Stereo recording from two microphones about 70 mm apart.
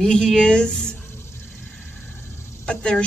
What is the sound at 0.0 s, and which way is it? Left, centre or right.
Speech, centre.